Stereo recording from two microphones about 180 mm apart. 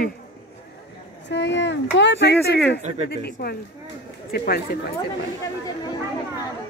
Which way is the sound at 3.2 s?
60° left (ahead or behind).